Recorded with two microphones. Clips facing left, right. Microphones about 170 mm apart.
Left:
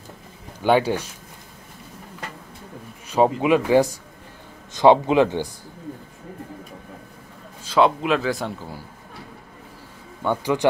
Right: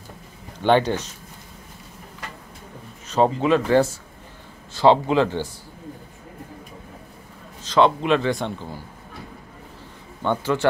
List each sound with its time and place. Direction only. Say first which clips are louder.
0.6 s speech: even; 10° left (ahead or behind)
3.1 s speech: left 1 dB; 10° left (ahead or behind)
7.6 s a man's voice: even; 5° left (ahead or behind)
10.2 s speech: left 1 dB; 10° left (ahead or behind)